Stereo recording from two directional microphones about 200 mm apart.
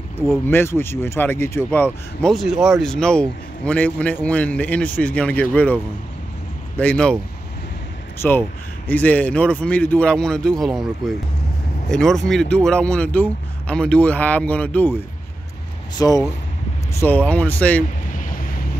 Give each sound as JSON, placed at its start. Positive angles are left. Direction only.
{"t": 0.5, "sound": "speech", "side_deg": 10}
{"t": 6.8, "sound": "speech", "side_deg": 5}
{"t": 8.2, "sound": "speech", "side_deg": 10}
{"t": 16.0, "sound": "speech", "side_deg": 15}
{"t": 17.0, "sound": "speech", "side_deg": 5}
{"t": 18.1, "sound": "vehicle", "side_deg": 45}